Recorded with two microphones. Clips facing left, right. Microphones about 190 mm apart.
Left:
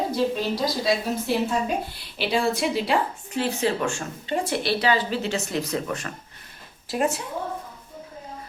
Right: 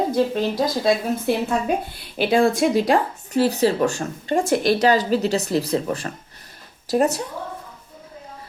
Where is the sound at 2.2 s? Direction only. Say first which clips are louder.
Right 6 dB; 50° right (ahead or behind).